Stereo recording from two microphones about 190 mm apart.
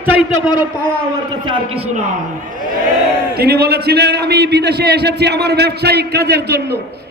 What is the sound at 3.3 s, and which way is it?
A man's voice, 55° right (ahead or behind).